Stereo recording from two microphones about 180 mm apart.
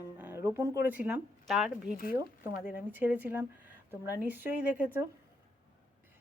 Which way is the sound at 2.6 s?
10° right (ahead or behind).